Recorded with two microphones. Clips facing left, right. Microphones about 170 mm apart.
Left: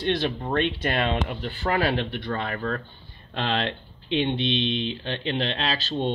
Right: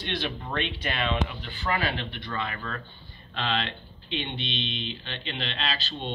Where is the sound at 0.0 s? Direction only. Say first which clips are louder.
Left 7 dB; 40° left (ahead or behind).